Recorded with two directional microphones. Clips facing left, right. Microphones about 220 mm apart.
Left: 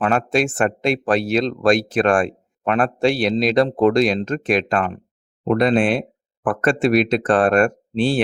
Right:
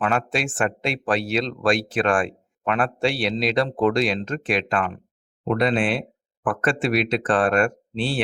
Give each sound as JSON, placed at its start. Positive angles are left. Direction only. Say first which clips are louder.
{"t": 0.0, "sound": "speech", "louder": "left 5 dB", "side_deg": 40}